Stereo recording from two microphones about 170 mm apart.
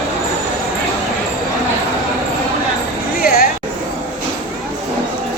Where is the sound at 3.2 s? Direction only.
60° left (ahead or behind).